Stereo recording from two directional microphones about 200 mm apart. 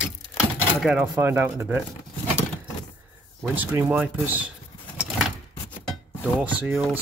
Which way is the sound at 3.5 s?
10° right (ahead or behind).